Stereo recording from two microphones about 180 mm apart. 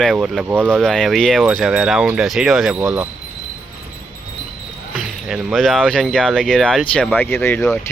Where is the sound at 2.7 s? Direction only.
10° right (ahead or behind).